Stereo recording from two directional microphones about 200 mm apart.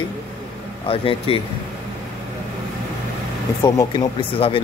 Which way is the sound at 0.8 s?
30° left (ahead or behind).